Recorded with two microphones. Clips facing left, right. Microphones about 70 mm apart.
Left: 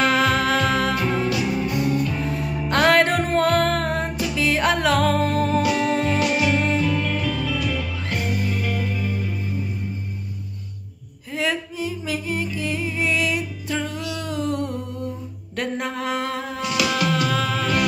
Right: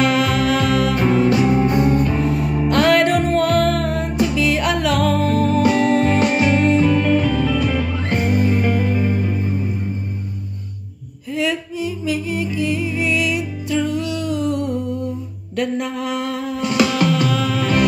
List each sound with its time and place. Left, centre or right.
0.0 s music: left
0.9 s music: right
2.7 s music: left
5.6 s music: right
11.3 s music: left
14.1 s a sound: left
15.5 s mantra: left
16.6 s music: right